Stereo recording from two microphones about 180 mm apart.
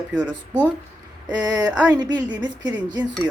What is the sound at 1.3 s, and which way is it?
Speech, 20° right (ahead or behind).